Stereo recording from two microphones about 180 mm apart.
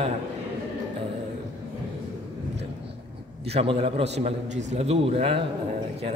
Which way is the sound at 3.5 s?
30° right (ahead or behind).